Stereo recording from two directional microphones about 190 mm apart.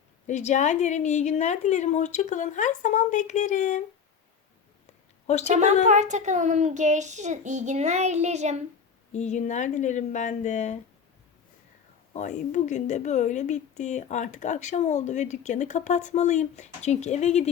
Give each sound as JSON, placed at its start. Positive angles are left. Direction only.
{"t": 0.3, "sound": "speech", "side_deg": 40}
{"t": 5.2, "sound": "a woman's voice", "side_deg": 35}
{"t": 5.5, "sound": "a child's voice", "side_deg": -40}
{"t": 9.1, "sound": "speech", "side_deg": 40}
{"t": 12.1, "sound": "speech", "side_deg": 40}